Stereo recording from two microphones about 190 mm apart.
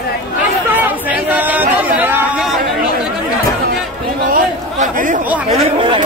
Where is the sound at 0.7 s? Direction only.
10° right (ahead or behind).